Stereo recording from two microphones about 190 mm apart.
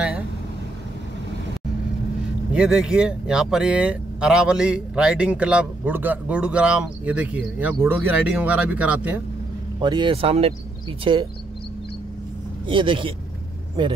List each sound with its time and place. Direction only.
2.5 s speech: 5° right (ahead or behind)
9.8 s speech: 25° right (ahead or behind)
12.6 s speech: 25° right (ahead or behind)